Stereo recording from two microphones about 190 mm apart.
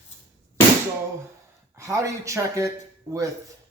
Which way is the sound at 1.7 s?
15° right (ahead or behind).